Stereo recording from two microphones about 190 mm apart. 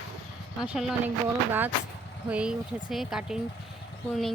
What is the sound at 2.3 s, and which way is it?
Speech, 5° right (ahead or behind).